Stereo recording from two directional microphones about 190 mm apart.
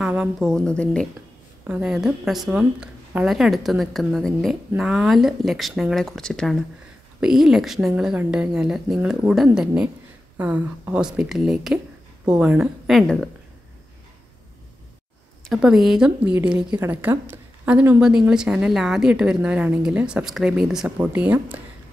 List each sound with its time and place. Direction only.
0.0 s a woman's voice: 5° right (ahead or behind)
15.4 s a woman's voice: centre (ahead or behind)